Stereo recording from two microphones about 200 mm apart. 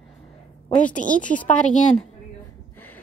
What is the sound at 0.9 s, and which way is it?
Speech, 40° left (ahead or behind).